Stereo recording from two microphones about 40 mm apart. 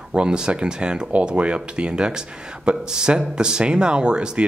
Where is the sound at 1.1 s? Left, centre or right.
Right.